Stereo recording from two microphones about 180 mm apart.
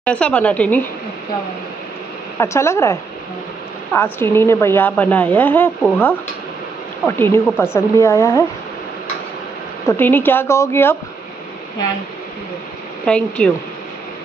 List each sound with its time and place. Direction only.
0.0 s a woman's voice: 5° left (ahead or behind)
2.3 s a woman's voice: 15° left (ahead or behind)
9.8 s a woman's voice: 10° left (ahead or behind)
13.0 s speech: 5° left (ahead or behind)